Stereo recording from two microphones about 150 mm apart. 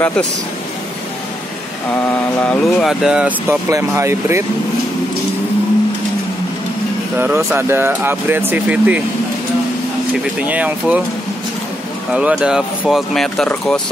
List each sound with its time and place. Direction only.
0.0 s speech: 5° left (ahead or behind)
2.0 s speech: 10° left (ahead or behind)
3.4 s speech: 20° right (ahead or behind)
7.2 s speech: 15° right (ahead or behind)
10.4 s speech: 10° right (ahead or behind)
12.1 s speech: 5° right (ahead or behind)